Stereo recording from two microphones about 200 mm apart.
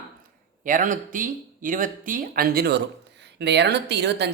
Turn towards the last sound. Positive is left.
turn(degrees=-55)  # may be behind; listen again after turning